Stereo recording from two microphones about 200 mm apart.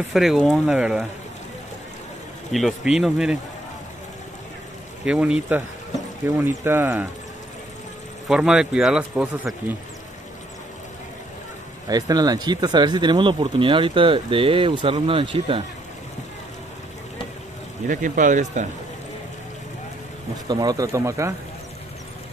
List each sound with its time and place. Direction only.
0.1 s speech: centre (ahead or behind)
2.5 s speech: centre (ahead or behind)
5.0 s speech: 5° right (ahead or behind)
8.3 s speech: 5° right (ahead or behind)
11.9 s speech: 20° right (ahead or behind)
17.8 s speech: 40° right (ahead or behind)
20.4 s speech: 20° right (ahead or behind)